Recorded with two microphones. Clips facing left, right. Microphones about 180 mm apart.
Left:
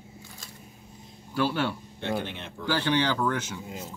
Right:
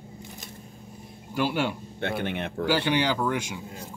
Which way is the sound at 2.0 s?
60° right (ahead or behind).